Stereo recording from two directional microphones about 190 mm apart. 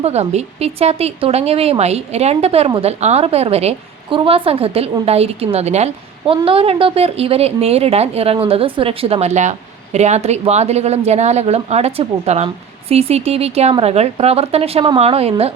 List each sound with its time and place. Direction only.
0.0 s a woman's voice: 35° right (ahead or behind)